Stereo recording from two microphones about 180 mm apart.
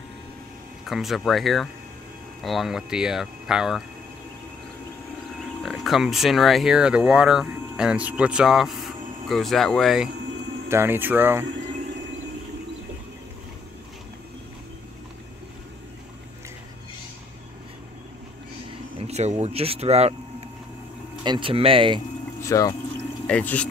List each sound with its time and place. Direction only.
0.8 s speech: centre (ahead or behind)
5.6 s speech: centre (ahead or behind)
10.7 s speech: 10° right (ahead or behind)
18.9 s speech: 35° right (ahead or behind)
22.4 s speech: 20° left (ahead or behind)
23.2 s speech: 5° left (ahead or behind)